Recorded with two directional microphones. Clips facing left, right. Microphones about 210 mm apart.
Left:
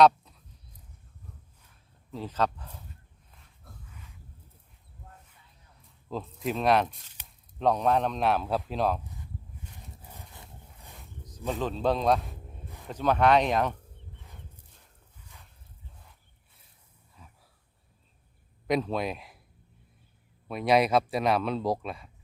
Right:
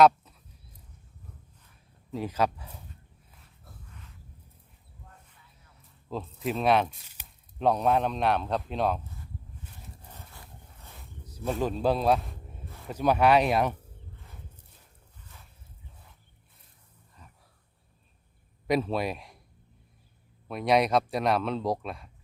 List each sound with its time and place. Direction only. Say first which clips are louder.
0.0 s a sound: even; centre (ahead or behind)
2.1 s speech: right 2 dB; 10° right (ahead or behind)
3.4 s a sound: left 1 dB; centre (ahead or behind)
6.1 s speech: even; centre (ahead or behind)
9.8 s livestock: even; 10° left (ahead or behind)
10.3 s dog: left 1 dB; 20° left (ahead or behind)
10.9 s a sound: even; 5° right (ahead or behind)
11.6 s a man's voice: right 1 dB; 10° right (ahead or behind)
14.2 s dog: even; centre (ahead or behind)
17.2 s a sound: even; 5° left (ahead or behind)
18.7 s speech: right 1 dB; 5° right (ahead or behind)
20.5 s speech: left 1 dB; centre (ahead or behind)